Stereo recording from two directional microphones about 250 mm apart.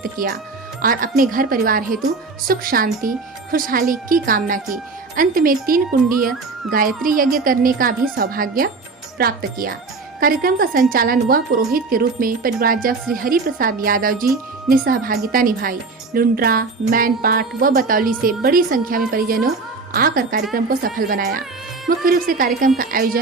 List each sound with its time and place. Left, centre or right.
0.0 s a woman's voice: right